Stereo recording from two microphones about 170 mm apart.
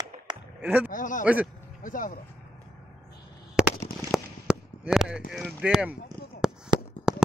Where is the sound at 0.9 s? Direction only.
50° left (ahead or behind).